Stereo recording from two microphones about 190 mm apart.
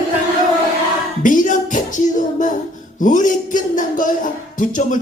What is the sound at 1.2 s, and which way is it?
Music, 45° left (ahead or behind).